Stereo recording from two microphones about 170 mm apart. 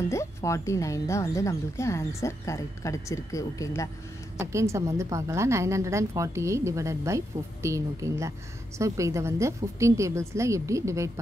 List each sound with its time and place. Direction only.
0.1 s speech: 15° left (ahead or behind)
4.4 s a woman's voice: 15° right (ahead or behind)